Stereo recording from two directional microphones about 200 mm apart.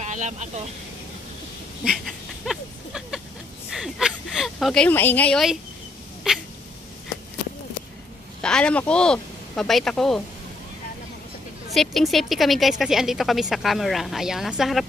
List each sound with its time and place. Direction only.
0.0 s speech: 35° right (ahead or behind)
1.9 s a sound: centre (ahead or behind)
3.7 s a woman's voice: centre (ahead or behind)
8.4 s speech: 5° left (ahead or behind)
11.7 s a woman's voice: centre (ahead or behind)